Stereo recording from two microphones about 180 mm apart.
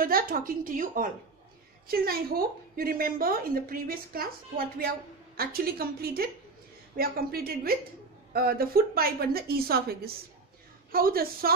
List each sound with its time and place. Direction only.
0.0 s a woman's voice: 55° right (ahead or behind)